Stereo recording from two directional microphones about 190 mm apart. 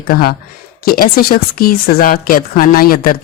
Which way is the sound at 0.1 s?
50° left (ahead or behind).